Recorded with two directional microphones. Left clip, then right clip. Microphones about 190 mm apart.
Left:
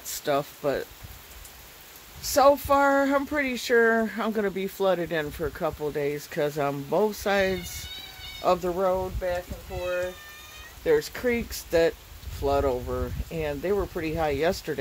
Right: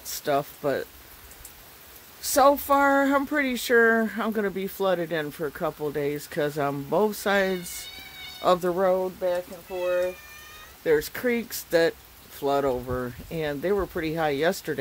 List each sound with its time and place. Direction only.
0.2 s speech: 5° right (ahead or behind)
2.2 s speech: 10° right (ahead or behind)
10.8 s speech: 10° right (ahead or behind)